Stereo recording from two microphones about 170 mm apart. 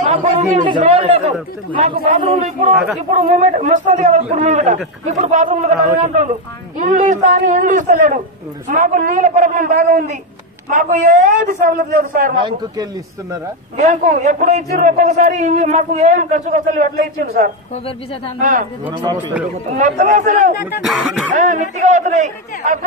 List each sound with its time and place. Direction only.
0.0 s a sound: 45° right (ahead or behind)
0.7 s speech: 35° right (ahead or behind)
2.7 s cough: centre (ahead or behind)
3.3 s a man's voice: 45° right (ahead or behind)
12.4 s speech: 25° right (ahead or behind)
13.7 s a man's voice: 45° right (ahead or behind)
18.4 s a man's voice: 50° right (ahead or behind)
19.8 s a man's voice: 50° right (ahead or behind)
20.8 s cough: centre (ahead or behind)
21.3 s a man's voice: 45° right (ahead or behind)